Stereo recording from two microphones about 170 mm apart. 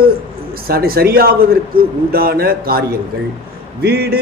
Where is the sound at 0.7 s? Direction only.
60° right (ahead or behind).